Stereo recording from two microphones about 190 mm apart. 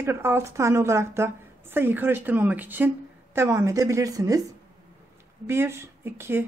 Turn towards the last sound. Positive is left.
turn(degrees=-10)  # may be behind; listen again after turning